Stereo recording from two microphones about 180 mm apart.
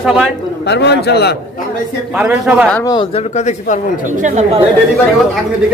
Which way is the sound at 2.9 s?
25° left (ahead or behind).